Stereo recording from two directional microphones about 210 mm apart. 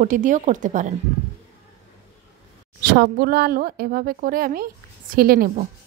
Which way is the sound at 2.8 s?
50° right (ahead or behind).